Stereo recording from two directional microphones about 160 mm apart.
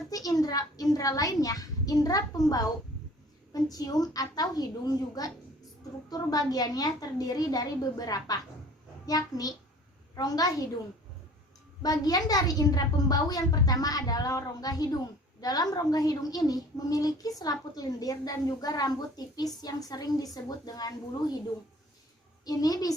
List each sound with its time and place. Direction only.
0.1 s a woman's voice: 25° left (ahead or behind)
3.5 s a woman's voice: 25° left (ahead or behind)
11.8 s a woman's voice: 25° left (ahead or behind)
22.4 s a woman's voice: 25° left (ahead or behind)